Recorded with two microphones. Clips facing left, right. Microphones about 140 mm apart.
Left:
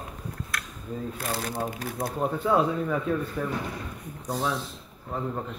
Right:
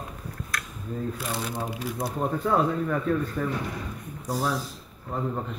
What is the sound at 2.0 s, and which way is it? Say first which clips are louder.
A man's voice: even; 5° left (ahead or behind).